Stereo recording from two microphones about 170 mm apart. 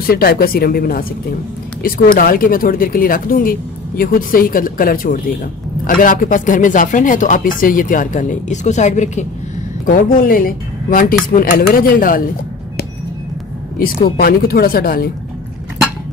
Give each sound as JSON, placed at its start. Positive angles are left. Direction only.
{"t": 0.0, "sound": "speech", "side_deg": 60}
{"t": 9.8, "sound": "speech", "side_deg": 55}
{"t": 13.7, "sound": "speech", "side_deg": 60}